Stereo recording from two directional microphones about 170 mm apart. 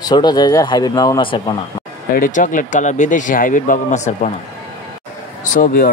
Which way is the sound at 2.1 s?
50° left (ahead or behind).